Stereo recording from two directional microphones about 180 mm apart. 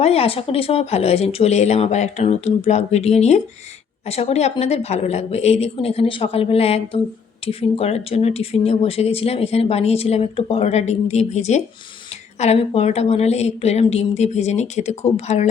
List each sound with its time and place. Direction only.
0.0 s speech: 35° left (ahead or behind)